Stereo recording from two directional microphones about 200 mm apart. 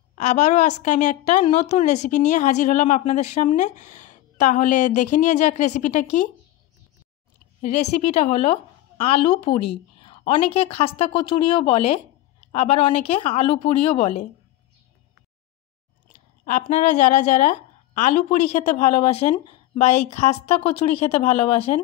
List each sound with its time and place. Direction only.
0.1 s a woman's voice: 35° left (ahead or behind)
7.6 s a woman's voice: 35° left (ahead or behind)
16.4 s a woman's voice: 40° left (ahead or behind)